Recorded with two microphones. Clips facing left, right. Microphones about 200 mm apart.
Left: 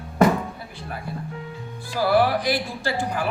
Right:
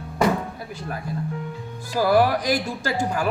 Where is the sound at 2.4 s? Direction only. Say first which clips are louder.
Right 1 dB; 45° right (ahead or behind).